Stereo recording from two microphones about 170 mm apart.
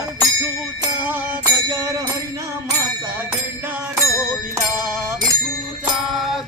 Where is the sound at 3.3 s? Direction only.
10° right (ahead or behind).